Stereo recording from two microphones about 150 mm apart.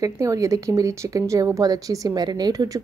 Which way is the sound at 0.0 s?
20° right (ahead or behind).